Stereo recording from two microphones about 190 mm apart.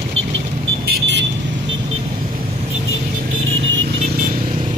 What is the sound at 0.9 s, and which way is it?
Vehicle, 65° right (ahead or behind).